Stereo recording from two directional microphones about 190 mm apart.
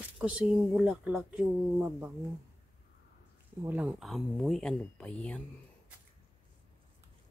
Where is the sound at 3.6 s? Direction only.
5° right (ahead or behind).